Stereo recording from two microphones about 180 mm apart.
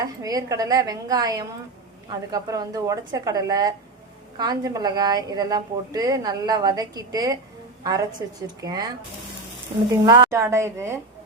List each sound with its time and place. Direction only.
0.0 s a woman's voice: 20° right (ahead or behind)
9.9 s a woman's voice: 20° right (ahead or behind)